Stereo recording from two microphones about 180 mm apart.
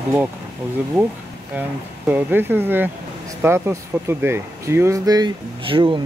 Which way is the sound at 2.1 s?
10° right (ahead or behind).